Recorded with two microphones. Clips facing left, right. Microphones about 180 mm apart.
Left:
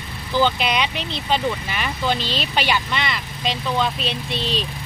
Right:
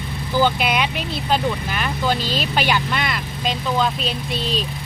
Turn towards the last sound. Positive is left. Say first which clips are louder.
# right 1 dB
turn(degrees=-45)  # may be behind; listen again after turning